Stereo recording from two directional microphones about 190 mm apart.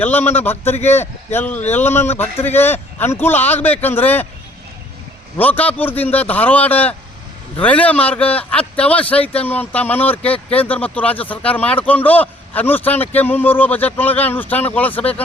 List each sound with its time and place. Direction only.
0.0 s a man's voice: 10° left (ahead or behind)
5.4 s a man's voice: 10° left (ahead or behind)
10.3 s speech: 30° left (ahead or behind)
10.7 s a man's voice: 10° left (ahead or behind)